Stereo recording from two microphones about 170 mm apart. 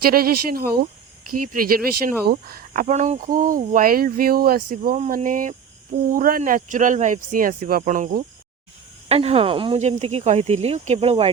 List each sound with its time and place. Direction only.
0.0 s speech: 60° right (ahead or behind)
2.8 s speech: 45° right (ahead or behind)
9.0 s speech: 35° right (ahead or behind)